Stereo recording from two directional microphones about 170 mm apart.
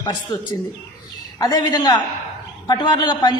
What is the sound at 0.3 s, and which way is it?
A man's voice, 20° left (ahead or behind).